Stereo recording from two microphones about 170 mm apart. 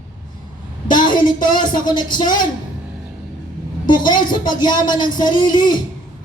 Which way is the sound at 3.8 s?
25° left (ahead or behind).